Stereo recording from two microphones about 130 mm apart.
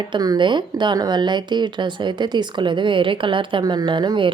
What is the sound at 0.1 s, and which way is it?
Speech, 35° right (ahead or behind).